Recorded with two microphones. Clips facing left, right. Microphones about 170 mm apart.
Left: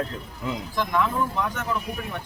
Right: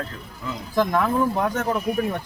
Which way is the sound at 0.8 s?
45° right (ahead or behind).